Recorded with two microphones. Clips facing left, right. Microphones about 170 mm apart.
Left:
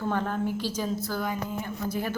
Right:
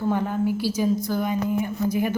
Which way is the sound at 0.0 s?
10° right (ahead or behind).